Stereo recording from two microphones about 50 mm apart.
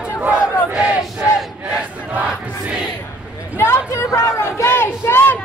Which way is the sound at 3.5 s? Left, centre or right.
Left.